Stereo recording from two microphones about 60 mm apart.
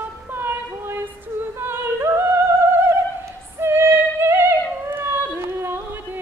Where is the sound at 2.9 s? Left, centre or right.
Right.